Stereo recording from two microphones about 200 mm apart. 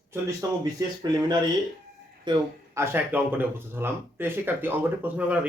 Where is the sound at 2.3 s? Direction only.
20° right (ahead or behind).